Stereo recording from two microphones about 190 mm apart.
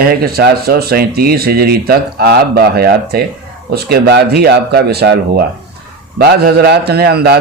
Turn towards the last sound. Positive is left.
turn(degrees=-55)  # may be behind; listen again after turning